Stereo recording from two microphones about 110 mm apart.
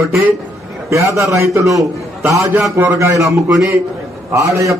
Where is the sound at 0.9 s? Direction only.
25° right (ahead or behind).